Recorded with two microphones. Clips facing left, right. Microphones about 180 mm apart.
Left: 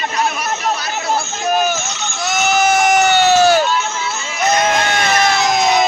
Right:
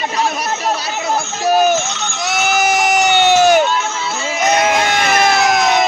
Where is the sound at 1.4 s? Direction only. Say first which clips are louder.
Right 5 dB; 35° right (ahead or behind).